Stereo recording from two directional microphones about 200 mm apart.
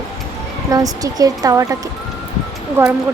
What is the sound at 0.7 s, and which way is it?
Speech, 15° right (ahead or behind).